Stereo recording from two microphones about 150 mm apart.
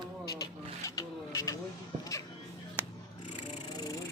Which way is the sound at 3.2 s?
45° left (ahead or behind).